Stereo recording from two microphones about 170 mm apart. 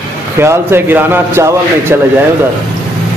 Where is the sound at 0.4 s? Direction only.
15° right (ahead or behind).